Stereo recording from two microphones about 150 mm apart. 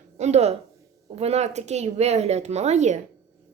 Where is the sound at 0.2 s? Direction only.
50° right (ahead or behind).